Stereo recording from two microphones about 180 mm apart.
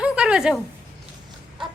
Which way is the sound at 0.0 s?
5° right (ahead or behind).